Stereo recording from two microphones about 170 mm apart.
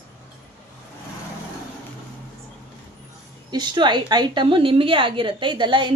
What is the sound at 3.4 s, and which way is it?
A woman's voice, 25° right (ahead or behind).